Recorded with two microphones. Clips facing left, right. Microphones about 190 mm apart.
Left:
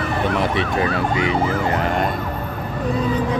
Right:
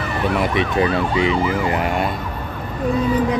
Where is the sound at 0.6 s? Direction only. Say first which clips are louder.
Right 2 dB; 25° right (ahead or behind).